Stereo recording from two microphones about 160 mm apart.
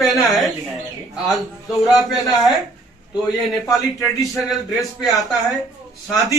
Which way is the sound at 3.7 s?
20° left (ahead or behind).